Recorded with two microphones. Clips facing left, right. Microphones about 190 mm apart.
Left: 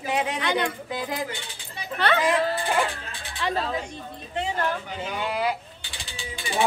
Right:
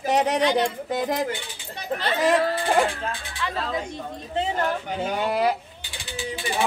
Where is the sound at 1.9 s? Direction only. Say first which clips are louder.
Left 4 dB; 65° left (ahead or behind).